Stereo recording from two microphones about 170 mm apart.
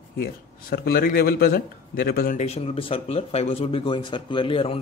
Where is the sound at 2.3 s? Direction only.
40° left (ahead or behind).